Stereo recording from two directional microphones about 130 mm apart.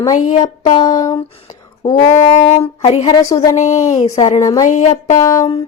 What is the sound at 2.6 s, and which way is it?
Speech, 55° left (ahead or behind).